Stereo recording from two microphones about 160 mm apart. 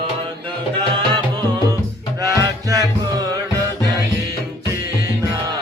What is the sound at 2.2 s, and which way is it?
Music, 20° right (ahead or behind).